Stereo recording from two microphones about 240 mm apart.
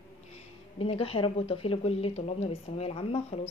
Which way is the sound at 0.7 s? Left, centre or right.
Left.